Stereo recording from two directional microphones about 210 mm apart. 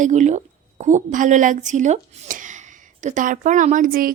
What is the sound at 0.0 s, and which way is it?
Speech, 35° right (ahead or behind).